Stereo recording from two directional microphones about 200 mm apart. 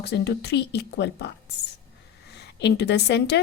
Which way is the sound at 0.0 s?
55° left (ahead or behind).